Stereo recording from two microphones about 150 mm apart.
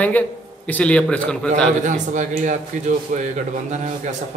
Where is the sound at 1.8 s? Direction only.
55° right (ahead or behind).